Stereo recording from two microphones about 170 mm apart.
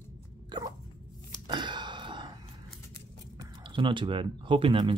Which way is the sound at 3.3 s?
30° right (ahead or behind).